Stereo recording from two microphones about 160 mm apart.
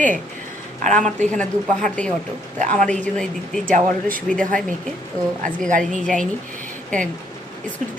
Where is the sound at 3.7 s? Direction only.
60° right (ahead or behind).